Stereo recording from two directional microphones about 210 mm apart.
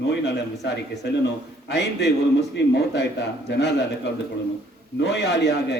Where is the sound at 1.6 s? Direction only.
55° left (ahead or behind).